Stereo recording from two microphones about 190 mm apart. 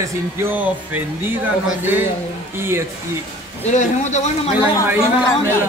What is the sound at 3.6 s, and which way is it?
Speech, 40° left (ahead or behind).